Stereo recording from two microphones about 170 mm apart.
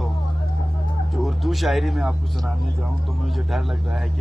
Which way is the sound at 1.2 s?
Centre (ahead or behind).